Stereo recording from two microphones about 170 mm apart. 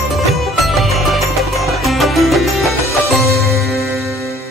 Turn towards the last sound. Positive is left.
turn(degrees=0)  # may be behind; listen again after turning